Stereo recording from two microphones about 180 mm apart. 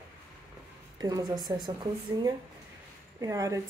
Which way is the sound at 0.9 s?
20° right (ahead or behind).